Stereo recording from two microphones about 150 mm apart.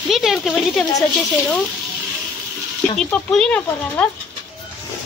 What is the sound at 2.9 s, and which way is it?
Speech, 5° left (ahead or behind).